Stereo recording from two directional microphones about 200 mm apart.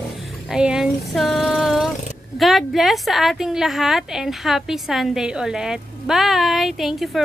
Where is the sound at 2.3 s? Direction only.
Centre (ahead or behind).